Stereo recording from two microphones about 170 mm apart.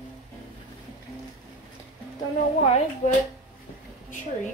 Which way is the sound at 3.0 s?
45° left (ahead or behind).